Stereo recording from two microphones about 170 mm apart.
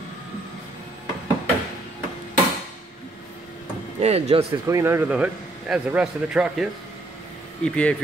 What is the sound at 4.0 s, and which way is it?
Speech, 40° right (ahead or behind).